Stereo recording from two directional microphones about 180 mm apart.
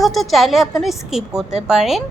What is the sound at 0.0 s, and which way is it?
A woman's voice, centre (ahead or behind).